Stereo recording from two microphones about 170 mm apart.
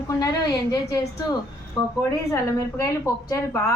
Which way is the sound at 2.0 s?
15° left (ahead or behind).